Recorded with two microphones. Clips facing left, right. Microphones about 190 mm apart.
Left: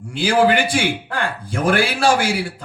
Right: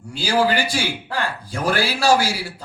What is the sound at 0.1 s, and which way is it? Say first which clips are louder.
A man's voice: left 4 dB; 55° left (ahead or behind).